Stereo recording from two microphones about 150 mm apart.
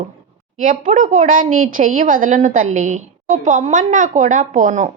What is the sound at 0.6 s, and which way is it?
A woman's voice, 60° right (ahead or behind).